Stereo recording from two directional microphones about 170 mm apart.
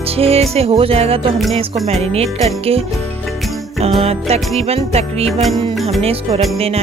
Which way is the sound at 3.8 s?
35° right (ahead or behind).